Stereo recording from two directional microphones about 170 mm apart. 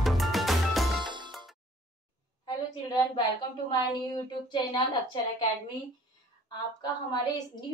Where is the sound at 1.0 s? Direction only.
25° right (ahead or behind).